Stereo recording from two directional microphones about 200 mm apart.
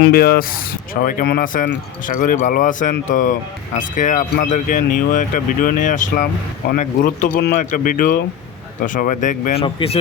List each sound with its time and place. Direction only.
0.0 s speech: 50° left (ahead or behind)
9.6 s speech: 25° left (ahead or behind)